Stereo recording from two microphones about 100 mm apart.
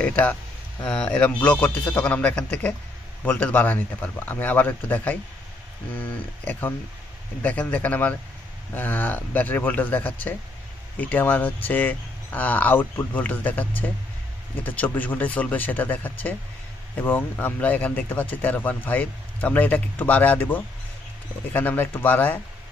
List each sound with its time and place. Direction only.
0.0 s speech: 15° left (ahead or behind)